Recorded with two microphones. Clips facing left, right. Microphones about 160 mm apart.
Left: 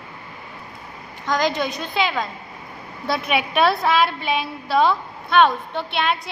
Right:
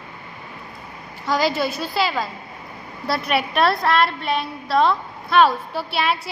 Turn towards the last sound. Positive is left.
turn(degrees=-5)  # may be behind; listen again after turning